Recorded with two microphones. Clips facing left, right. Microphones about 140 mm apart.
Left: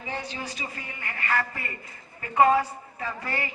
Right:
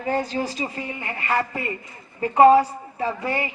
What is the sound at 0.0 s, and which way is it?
A woman's voice, 45° right (ahead or behind).